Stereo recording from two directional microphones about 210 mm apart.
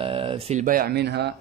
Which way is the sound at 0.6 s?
45° right (ahead or behind).